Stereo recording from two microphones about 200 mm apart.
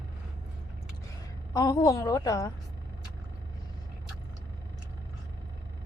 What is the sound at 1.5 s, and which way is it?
Speech, 15° left (ahead or behind).